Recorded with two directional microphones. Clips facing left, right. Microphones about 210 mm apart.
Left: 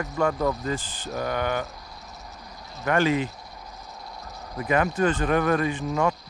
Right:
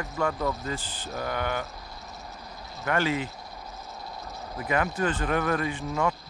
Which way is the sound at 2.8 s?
20° left (ahead or behind).